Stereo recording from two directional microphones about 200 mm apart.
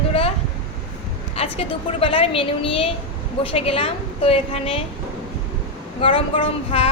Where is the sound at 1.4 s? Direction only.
30° left (ahead or behind).